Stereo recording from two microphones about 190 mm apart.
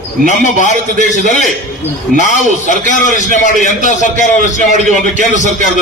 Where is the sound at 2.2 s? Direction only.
40° left (ahead or behind).